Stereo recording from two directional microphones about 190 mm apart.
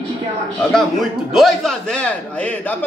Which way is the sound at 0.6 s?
Centre (ahead or behind).